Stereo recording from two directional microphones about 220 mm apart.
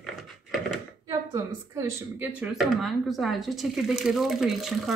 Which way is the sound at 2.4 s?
Centre (ahead or behind).